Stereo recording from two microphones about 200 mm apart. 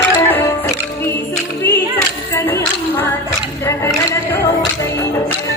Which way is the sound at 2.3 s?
15° left (ahead or behind).